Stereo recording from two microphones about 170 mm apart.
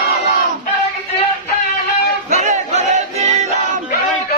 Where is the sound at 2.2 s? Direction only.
40° right (ahead or behind).